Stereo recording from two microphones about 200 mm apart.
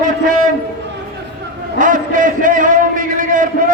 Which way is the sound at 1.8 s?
40° right (ahead or behind).